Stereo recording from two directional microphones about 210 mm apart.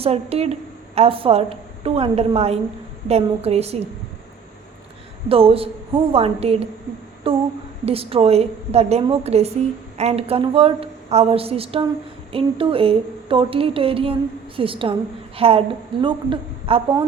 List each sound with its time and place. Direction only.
0.0 s speech: 30° right (ahead or behind)
5.3 s speech: 25° right (ahead or behind)